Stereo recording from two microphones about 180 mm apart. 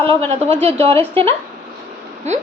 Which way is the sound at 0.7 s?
30° right (ahead or behind).